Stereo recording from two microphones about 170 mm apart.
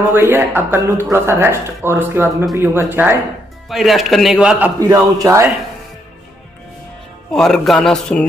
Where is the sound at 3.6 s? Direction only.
Centre (ahead or behind).